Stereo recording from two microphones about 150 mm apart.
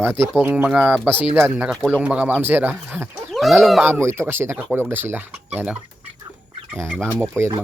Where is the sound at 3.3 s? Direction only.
Centre (ahead or behind).